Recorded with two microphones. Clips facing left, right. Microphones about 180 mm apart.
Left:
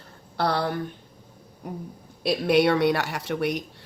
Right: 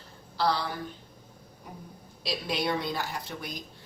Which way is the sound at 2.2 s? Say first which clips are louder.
Left 11 dB; 60° left (ahead or behind).